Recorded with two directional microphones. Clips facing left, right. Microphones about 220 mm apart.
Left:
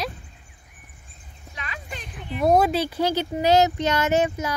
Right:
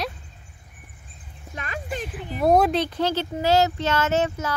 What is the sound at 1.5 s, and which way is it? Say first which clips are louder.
Clip-clop: right 6 dB; 45° right (ahead or behind).